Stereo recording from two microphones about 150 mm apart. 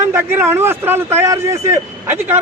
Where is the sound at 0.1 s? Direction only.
15° right (ahead or behind).